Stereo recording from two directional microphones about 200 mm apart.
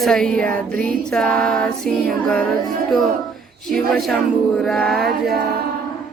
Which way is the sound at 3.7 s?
Centre (ahead or behind).